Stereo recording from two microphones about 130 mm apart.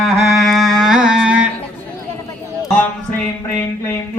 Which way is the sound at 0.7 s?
5° right (ahead or behind).